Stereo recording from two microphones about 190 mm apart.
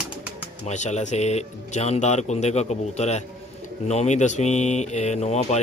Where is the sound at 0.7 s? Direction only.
35° left (ahead or behind).